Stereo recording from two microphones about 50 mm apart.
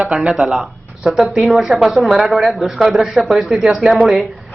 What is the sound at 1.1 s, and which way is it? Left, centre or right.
Speech, centre.